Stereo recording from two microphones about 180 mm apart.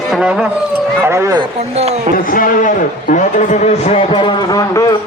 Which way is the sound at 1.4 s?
35° right (ahead or behind).